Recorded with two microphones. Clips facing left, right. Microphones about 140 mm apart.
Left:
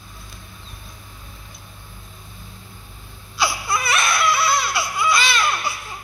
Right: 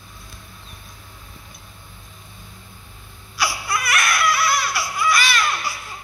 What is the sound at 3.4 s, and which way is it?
Baby cry, 25° left (ahead or behind).